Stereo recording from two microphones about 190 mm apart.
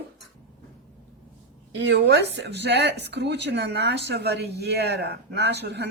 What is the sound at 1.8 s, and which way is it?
Speech, 65° right (ahead or behind).